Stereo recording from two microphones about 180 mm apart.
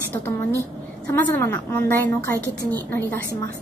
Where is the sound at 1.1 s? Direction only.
10° left (ahead or behind).